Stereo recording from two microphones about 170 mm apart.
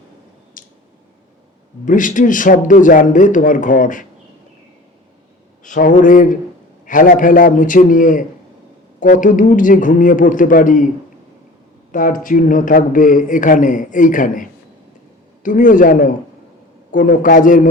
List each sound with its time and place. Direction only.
0.6 s a sound: 55° left (ahead or behind)
1.8 s speech: 50° left (ahead or behind)
5.6 s speech: 50° left (ahead or behind)
15.4 s speech: 50° left (ahead or behind)